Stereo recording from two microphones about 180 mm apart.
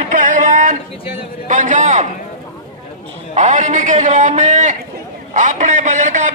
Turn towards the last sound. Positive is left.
turn(degrees=-40)  # may be behind; listen again after turning